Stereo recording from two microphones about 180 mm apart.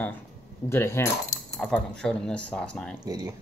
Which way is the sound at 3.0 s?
20° right (ahead or behind).